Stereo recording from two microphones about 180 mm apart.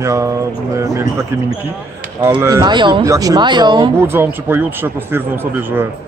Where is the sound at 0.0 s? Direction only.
15° right (ahead or behind).